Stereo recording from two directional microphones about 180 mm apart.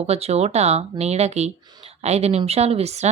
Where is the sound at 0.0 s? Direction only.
35° right (ahead or behind).